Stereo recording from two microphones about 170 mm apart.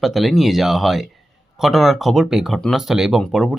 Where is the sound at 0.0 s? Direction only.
Centre (ahead or behind).